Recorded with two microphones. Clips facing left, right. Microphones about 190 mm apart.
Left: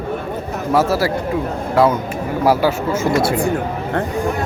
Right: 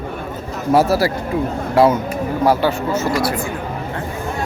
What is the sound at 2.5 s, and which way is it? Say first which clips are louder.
Speech: left 2 dB; 10° left (ahead or behind).